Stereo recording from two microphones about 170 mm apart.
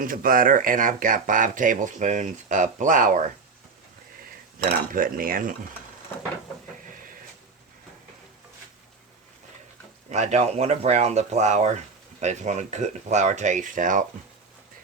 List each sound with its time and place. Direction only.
0.0 s speech: 55° right (ahead or behind)
4.9 s speech: 55° right (ahead or behind)
10.1 s speech: 40° right (ahead or behind)